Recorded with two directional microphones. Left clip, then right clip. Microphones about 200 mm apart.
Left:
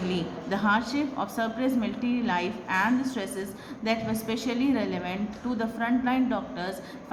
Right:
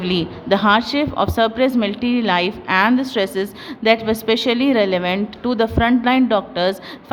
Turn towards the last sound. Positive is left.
turn(degrees=-50)  # may be behind; listen again after turning